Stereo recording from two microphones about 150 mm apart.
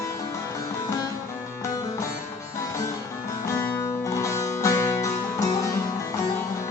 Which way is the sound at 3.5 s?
20° left (ahead or behind).